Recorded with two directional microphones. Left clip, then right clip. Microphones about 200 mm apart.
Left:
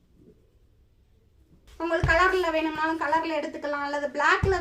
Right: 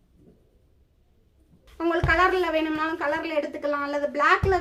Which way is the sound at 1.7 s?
35° right (ahead or behind).